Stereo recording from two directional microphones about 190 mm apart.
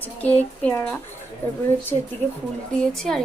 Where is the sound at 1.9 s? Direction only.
25° right (ahead or behind).